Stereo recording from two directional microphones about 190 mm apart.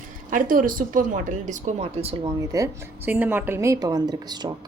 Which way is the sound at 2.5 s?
15° right (ahead or behind).